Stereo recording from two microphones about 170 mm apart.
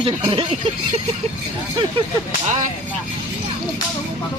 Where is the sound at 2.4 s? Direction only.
45° right (ahead or behind).